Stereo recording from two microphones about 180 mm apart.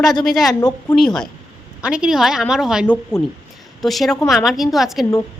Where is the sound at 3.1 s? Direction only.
15° left (ahead or behind).